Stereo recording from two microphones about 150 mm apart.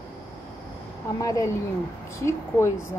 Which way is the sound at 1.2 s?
20° left (ahead or behind).